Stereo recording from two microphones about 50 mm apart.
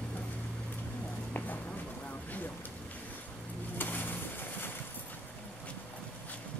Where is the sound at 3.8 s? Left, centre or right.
Left.